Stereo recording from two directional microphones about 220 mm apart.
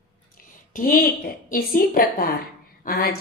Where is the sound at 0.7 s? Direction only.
40° left (ahead or behind).